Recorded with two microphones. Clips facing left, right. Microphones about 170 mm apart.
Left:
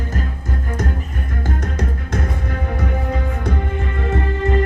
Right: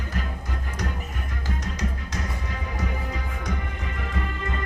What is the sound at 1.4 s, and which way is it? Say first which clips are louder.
Music: left 6 dB; 50° left (ahead or behind).